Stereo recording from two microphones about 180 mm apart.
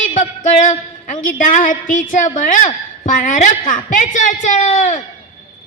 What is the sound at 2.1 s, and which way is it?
A woman's voice, 45° left (ahead or behind).